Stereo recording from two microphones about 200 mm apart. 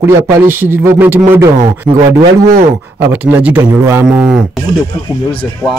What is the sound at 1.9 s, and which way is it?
Speech, 25° right (ahead or behind).